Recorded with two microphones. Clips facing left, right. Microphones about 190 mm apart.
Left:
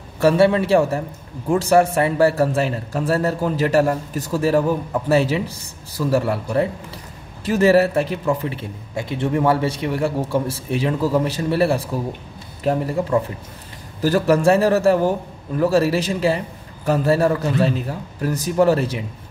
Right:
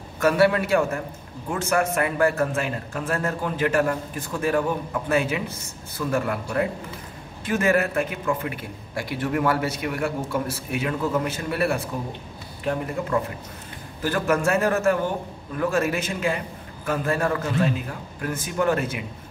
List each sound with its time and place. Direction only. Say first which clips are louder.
0.2 s a man's voice: left 4 dB; 30° left (ahead or behind)
14.0 s a man's voice: left 7 dB; 35° left (ahead or behind)